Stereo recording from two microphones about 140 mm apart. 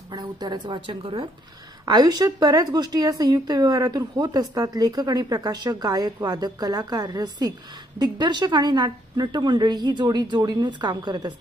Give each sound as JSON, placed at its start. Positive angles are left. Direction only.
{"t": 0.1, "sound": "a woman's voice", "side_deg": -30}